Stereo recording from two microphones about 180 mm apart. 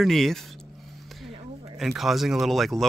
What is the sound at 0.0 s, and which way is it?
Speech, centre (ahead or behind).